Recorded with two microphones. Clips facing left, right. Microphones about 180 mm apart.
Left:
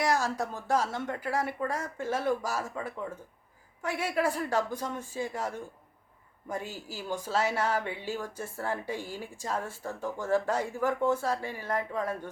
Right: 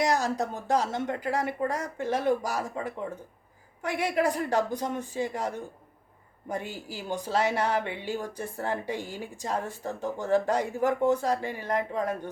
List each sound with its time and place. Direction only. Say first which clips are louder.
0.0 s speech: right 2 dB; 20° right (ahead or behind)
3.8 s speech: right 3 dB; 15° right (ahead or behind)
6.7 s speech: right 3 dB; 40° left (ahead or behind)
7.1 s speech: right 3 dB; 15° right (ahead or behind)